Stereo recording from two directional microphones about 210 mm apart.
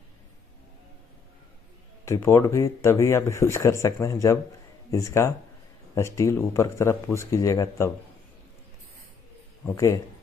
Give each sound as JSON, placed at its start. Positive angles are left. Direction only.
{"t": 2.0, "sound": "speech", "side_deg": 15}
{"t": 9.7, "sound": "speech", "side_deg": 15}